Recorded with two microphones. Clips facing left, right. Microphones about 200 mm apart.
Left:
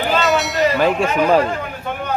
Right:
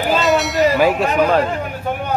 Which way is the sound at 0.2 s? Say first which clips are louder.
Right 3 dB; centre (ahead or behind).